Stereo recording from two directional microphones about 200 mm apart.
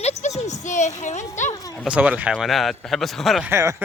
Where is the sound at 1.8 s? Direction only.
5° right (ahead or behind).